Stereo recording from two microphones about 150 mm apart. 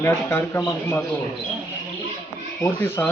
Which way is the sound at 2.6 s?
15° left (ahead or behind).